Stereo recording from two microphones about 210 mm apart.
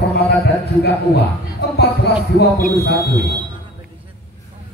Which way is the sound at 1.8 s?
50° left (ahead or behind).